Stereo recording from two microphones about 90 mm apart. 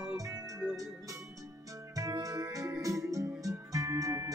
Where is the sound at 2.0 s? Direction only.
40° right (ahead or behind).